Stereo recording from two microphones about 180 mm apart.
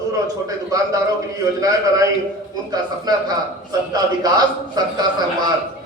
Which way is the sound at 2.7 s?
20° right (ahead or behind).